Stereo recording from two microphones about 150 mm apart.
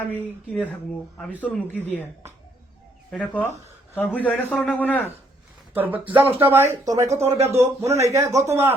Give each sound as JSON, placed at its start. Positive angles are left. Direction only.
{"t": 0.1, "sound": "a man's voice", "side_deg": 10}
{"t": 3.1, "sound": "a man's voice", "side_deg": 10}
{"t": 5.7, "sound": "speech", "side_deg": -10}
{"t": 7.3, "sound": "a man's voice", "side_deg": -45}
{"t": 7.6, "sound": "a man's voice", "side_deg": -20}